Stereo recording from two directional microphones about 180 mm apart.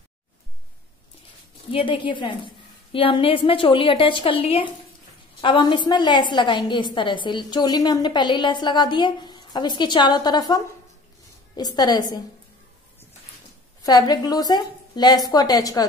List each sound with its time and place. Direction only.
1.7 s a woman's voice: 30° left (ahead or behind)
13.8 s a woman's voice: 20° left (ahead or behind)